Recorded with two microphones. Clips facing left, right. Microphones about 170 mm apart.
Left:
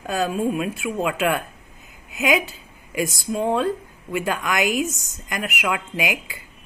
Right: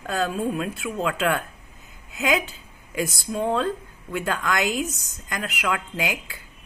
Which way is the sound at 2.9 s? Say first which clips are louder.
Left 2 dB; 90° left.